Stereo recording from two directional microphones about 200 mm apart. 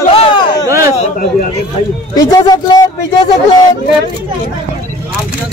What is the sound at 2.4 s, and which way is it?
Speech, 20° left (ahead or behind).